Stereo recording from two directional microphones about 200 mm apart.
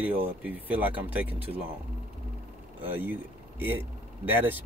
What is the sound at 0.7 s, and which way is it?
Speech, 10° right (ahead or behind).